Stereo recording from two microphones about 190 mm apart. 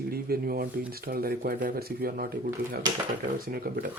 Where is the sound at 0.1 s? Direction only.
50° right (ahead or behind).